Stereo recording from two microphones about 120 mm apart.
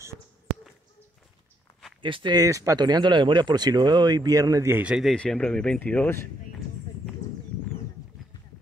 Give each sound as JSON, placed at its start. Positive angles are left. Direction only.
{"t": 2.0, "sound": "speech", "side_deg": -45}
{"t": 2.3, "sound": "speech", "side_deg": -30}
{"t": 4.7, "sound": "speech", "side_deg": -5}
{"t": 5.1, "sound": "speech", "side_deg": 10}